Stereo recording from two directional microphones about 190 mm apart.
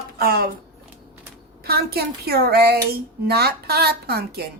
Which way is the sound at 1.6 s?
55° right (ahead or behind).